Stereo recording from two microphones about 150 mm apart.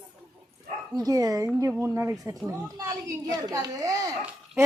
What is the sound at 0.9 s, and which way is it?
A woman's voice, 25° right (ahead or behind).